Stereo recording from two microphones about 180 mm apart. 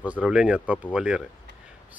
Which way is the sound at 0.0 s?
5° right (ahead or behind).